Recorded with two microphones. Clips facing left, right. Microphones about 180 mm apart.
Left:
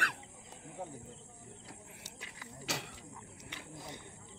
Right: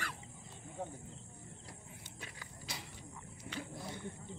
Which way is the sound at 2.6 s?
75° left (ahead or behind).